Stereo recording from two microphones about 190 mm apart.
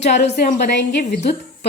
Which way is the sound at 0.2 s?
55° left (ahead or behind).